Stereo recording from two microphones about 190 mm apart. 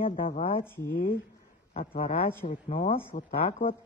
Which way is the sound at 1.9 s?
30° left (ahead or behind).